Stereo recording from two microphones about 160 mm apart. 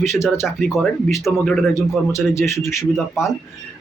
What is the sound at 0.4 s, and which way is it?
Speech, 5° right (ahead or behind).